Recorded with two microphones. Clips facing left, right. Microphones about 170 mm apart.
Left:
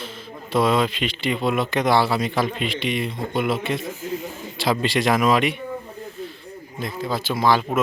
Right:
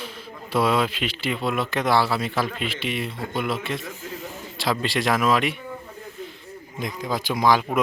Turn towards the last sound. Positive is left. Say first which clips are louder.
# left 1 dB
turn(degrees=-10)  # may be behind; listen again after turning